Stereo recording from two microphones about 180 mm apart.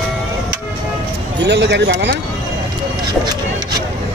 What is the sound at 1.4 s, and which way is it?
Speech, 75° right (ahead or behind).